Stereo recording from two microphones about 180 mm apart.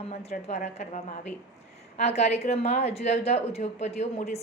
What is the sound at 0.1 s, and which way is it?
A woman's voice, 35° left (ahead or behind).